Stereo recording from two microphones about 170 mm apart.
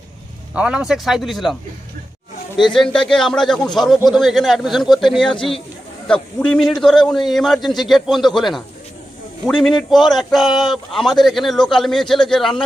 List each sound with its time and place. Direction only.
0.6 s a man's voice: 5° right (ahead or behind)
5.3 s a man's voice: 30° left (ahead or behind)
6.0 s a man's voice: 5° left (ahead or behind)